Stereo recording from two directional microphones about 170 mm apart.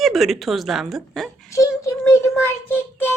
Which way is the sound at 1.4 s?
20° left (ahead or behind).